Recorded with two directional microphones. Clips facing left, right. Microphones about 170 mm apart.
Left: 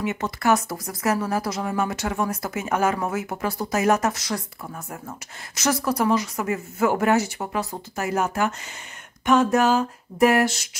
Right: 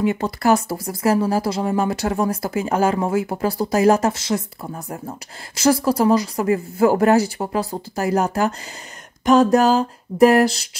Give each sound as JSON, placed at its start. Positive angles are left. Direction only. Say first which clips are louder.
{"t": 0.0, "sound": "speech", "louder": "right 5 dB", "side_deg": -35}
{"t": 5.6, "sound": "speech", "louder": "right 6 dB", "side_deg": -30}